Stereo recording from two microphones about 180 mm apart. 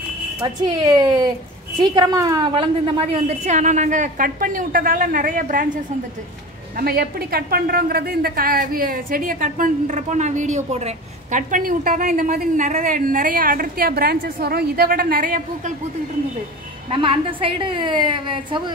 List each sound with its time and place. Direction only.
0.4 s a woman's voice: 25° right (ahead or behind); by 5.7 s 50° right (ahead or behind)
6.8 s a woman's voice: 60° right (ahead or behind)
16.9 s a woman's voice: 30° right (ahead or behind)